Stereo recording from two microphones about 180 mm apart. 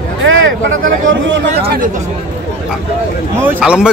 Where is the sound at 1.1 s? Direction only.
85° right.